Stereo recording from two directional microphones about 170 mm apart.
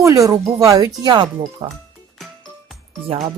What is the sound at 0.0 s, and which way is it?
Speech, 20° right (ahead or behind).